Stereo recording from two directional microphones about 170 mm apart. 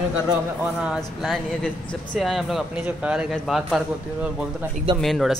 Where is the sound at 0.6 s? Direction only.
5° right (ahead or behind).